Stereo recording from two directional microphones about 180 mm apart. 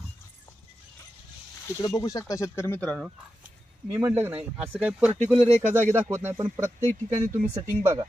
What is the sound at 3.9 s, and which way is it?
Speech, 10° right (ahead or behind).